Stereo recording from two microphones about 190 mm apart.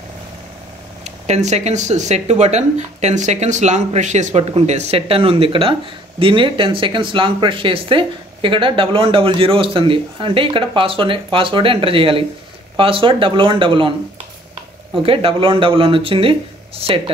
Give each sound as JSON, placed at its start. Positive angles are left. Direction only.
{"t": 1.0, "sound": "speech", "side_deg": -35}
{"t": 15.0, "sound": "speech", "side_deg": -30}